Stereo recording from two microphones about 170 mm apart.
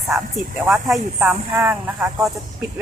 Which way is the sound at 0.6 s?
5° right (ahead or behind).